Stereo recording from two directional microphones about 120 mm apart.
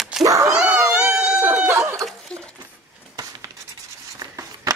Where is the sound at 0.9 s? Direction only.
5° right (ahead or behind).